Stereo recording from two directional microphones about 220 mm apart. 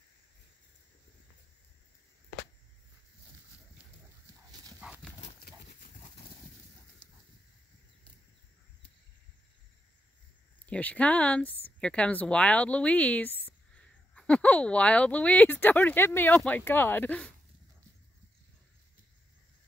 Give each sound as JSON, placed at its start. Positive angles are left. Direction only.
{"t": 4.5, "sound": "horse", "side_deg": -15}
{"t": 10.7, "sound": "speech", "side_deg": 5}